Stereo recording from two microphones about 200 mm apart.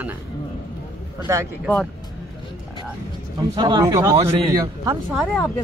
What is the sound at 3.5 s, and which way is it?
Speech, 20° right (ahead or behind).